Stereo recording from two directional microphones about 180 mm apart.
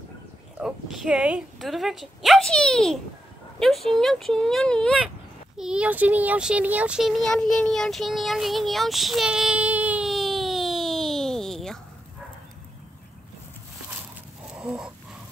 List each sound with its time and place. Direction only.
0.6 s a child's voice: centre (ahead or behind)
14.5 s dog: 5° right (ahead or behind)